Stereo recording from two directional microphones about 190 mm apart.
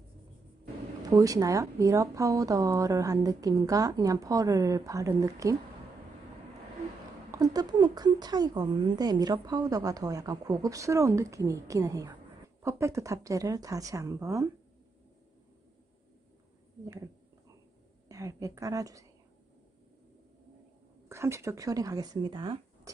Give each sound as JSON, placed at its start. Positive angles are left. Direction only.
{"t": 1.1, "sound": "a woman's voice", "side_deg": -20}
{"t": 7.2, "sound": "a woman's voice", "side_deg": -20}
{"t": 18.0, "sound": "a woman's voice", "side_deg": -15}
{"t": 21.1, "sound": "a woman's voice", "side_deg": -15}